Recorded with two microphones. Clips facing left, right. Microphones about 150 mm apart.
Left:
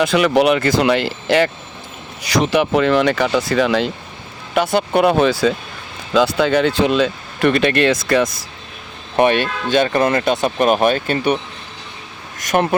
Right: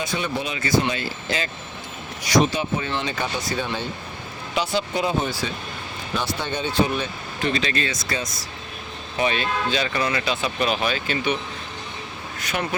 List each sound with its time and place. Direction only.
0.0 s speech: 80° left
4.5 s speech: 55° left (ahead or behind)
12.5 s speech: 50° left (ahead or behind)